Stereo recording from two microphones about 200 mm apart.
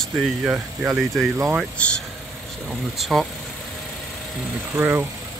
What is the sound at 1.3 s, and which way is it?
Speech, 15° right (ahead or behind).